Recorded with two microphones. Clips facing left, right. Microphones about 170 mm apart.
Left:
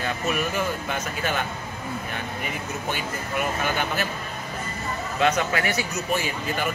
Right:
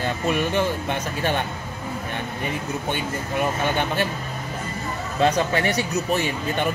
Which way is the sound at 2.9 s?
30° right (ahead or behind).